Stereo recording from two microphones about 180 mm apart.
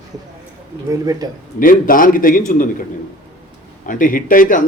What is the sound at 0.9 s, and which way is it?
Speech, 20° right (ahead or behind).